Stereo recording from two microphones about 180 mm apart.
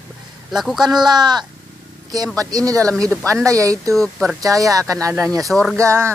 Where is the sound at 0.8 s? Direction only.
25° right (ahead or behind).